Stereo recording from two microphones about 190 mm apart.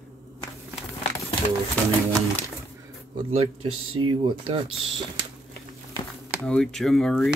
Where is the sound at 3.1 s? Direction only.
30° right (ahead or behind).